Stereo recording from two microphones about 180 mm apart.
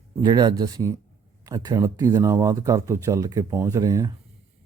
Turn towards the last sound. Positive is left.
turn(degrees=-20)  # may be behind; listen again after turning